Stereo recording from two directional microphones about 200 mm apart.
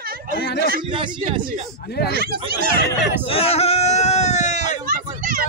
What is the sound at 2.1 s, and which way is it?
Speech, 50° right (ahead or behind).